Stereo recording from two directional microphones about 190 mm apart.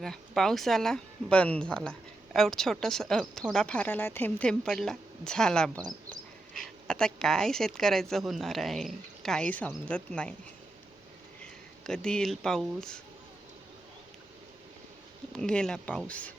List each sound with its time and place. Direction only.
0.0 s speech: centre (ahead or behind)
11.8 s speech: 5° left (ahead or behind)
15.3 s speech: 5° left (ahead or behind)